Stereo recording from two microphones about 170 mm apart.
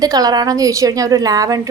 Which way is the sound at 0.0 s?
20° right (ahead or behind).